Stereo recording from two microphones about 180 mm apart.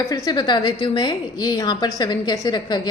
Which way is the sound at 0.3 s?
25° left (ahead or behind).